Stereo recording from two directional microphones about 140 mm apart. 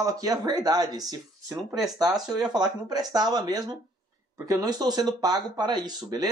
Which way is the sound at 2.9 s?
30° right (ahead or behind).